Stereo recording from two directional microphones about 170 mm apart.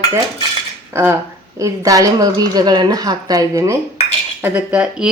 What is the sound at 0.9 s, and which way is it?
A woman's voice, 15° right (ahead or behind).